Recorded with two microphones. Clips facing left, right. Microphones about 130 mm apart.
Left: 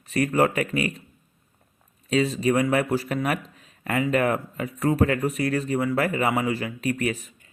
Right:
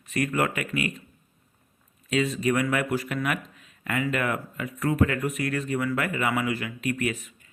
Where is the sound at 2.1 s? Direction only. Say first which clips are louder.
Left 3 dB; 35° left (ahead or behind).